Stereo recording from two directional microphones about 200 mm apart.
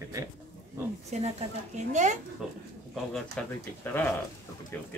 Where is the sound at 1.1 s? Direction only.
35° right (ahead or behind).